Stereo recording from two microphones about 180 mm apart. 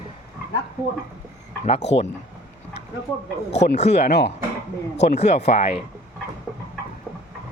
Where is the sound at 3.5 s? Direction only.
35° left (ahead or behind).